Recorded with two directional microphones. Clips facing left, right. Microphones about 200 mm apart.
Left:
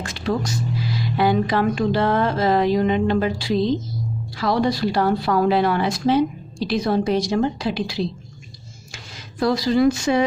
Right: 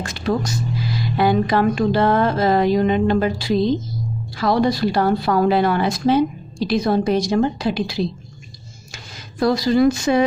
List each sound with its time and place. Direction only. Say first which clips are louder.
0.1 s speech: right 2 dB; 40° right (ahead or behind)
1.1 s a sound: right 2 dB; 45° right (ahead or behind)
8.9 s speech: right 1 dB; 45° right (ahead or behind)